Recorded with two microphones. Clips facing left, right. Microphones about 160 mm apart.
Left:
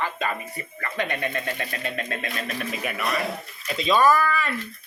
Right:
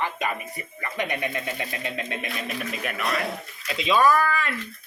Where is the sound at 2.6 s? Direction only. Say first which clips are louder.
Left 1 dB; centre (ahead or behind).